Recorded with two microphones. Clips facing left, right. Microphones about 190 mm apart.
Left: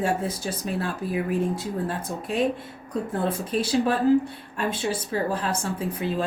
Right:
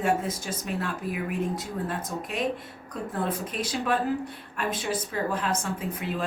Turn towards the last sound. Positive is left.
turn(degrees=30)  # may be behind; listen again after turning